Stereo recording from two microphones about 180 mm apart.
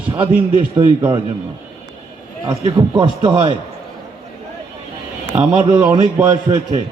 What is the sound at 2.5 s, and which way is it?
A man's voice, 25° right (ahead or behind).